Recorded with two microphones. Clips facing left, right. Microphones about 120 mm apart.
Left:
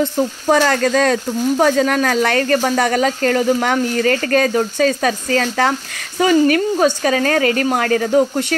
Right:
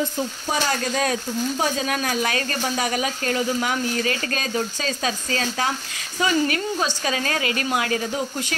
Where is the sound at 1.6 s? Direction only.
70° left (ahead or behind).